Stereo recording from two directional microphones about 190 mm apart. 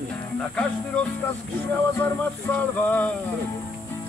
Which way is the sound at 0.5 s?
5° left (ahead or behind).